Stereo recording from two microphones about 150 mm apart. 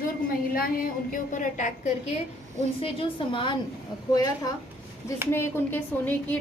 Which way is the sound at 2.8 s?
35° left (ahead or behind).